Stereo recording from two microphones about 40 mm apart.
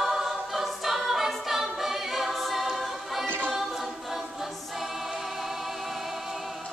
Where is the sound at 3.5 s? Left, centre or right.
Centre.